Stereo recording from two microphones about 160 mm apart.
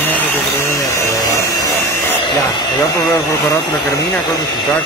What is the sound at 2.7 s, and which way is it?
Speech, 20° left (ahead or behind).